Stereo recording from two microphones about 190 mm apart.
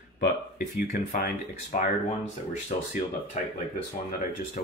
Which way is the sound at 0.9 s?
40° left (ahead or behind).